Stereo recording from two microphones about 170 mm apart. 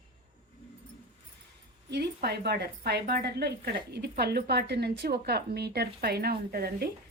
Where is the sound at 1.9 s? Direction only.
70° right (ahead or behind).